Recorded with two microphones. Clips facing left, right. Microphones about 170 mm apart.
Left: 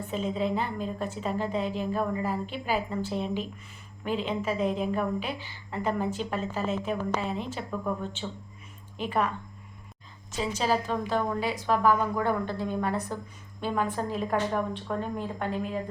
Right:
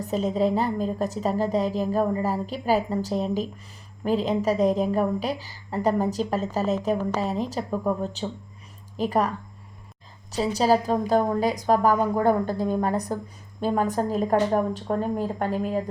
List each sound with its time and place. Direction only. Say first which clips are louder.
0.0 s a woman's voice: right 6 dB; 40° right (ahead or behind)
10.3 s a woman's voice: right 6 dB; 35° right (ahead or behind)